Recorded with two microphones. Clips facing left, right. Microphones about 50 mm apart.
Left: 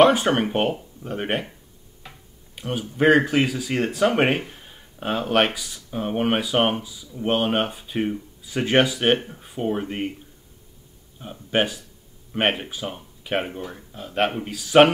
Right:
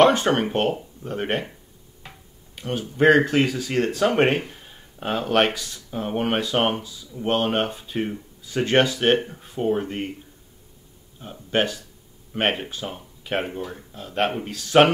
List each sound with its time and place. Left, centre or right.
0.0 s speech: centre
2.5 s speech: centre
11.1 s speech: centre